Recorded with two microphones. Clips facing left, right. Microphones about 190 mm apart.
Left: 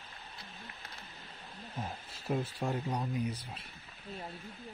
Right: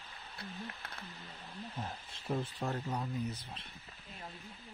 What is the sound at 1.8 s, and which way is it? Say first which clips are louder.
Speech: left 5 dB; 10° left (ahead or behind).